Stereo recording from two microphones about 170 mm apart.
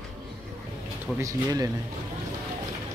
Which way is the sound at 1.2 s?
20° right (ahead or behind).